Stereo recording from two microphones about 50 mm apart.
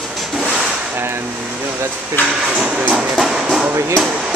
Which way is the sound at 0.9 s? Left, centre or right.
Right.